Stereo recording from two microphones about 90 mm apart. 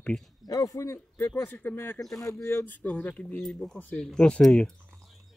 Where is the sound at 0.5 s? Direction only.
40° left (ahead or behind); by 4.6 s 10° left (ahead or behind).